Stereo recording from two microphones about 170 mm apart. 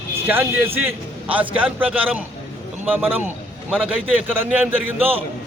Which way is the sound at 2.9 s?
10° right (ahead or behind).